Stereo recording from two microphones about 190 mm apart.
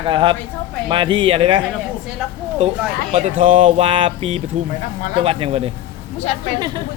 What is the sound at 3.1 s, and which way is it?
Speech, 30° right (ahead or behind).